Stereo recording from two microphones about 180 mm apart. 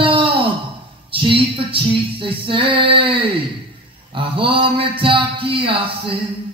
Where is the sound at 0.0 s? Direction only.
30° right (ahead or behind).